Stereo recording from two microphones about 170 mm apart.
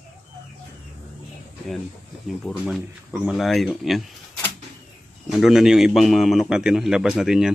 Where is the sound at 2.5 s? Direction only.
Centre (ahead or behind).